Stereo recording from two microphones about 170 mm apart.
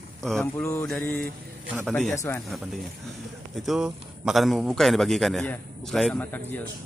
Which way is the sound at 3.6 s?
5° right (ahead or behind).